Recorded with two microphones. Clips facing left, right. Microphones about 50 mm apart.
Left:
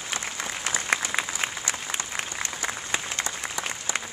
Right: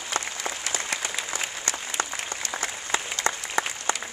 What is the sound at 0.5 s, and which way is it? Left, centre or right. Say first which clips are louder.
Applause: left 5 dB; left.